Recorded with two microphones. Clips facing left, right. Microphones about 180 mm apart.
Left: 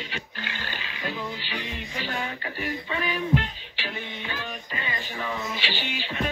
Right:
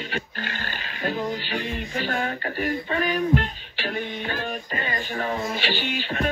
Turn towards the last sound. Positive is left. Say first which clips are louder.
# right 4 dB
turn(degrees=-50)  # may be behind; listen again after turning